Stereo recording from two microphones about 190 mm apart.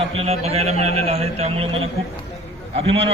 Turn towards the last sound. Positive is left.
turn(degrees=-30)  # may be behind; listen again after turning